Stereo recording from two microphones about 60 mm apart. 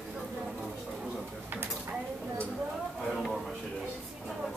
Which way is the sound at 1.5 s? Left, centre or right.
Right.